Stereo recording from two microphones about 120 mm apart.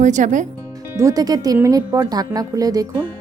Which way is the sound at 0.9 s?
30° right (ahead or behind).